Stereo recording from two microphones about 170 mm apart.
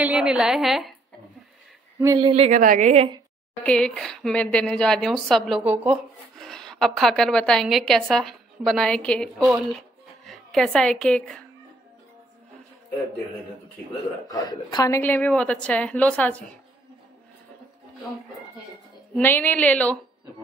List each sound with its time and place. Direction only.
0.0 s a woman's voice: 5° right (ahead or behind)
2.1 s speech: 30° right (ahead or behind)
2.5 s a woman's voice: 50° right (ahead or behind)
3.6 s a woman's voice: 5° left (ahead or behind)
6.3 s a woman's voice: 5° left (ahead or behind)
9.7 s music: centre (ahead or behind)
14.2 s a woman's voice: 20° left (ahead or behind)
15.0 s a woman's voice: 10° left (ahead or behind)
19.1 s a woman's voice: 10° left (ahead or behind)